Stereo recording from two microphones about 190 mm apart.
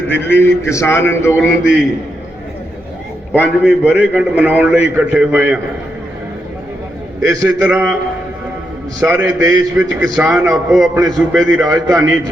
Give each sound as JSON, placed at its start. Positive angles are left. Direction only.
{"t": 0.1, "sound": "a man's voice", "side_deg": 10}
{"t": 3.3, "sound": "a man's voice", "side_deg": -5}
{"t": 7.2, "sound": "a man's voice", "side_deg": -10}
{"t": 9.0, "sound": "a man's voice", "side_deg": -10}